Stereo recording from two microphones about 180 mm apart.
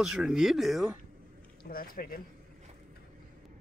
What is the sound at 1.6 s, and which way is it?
Speech, 55° left (ahead or behind).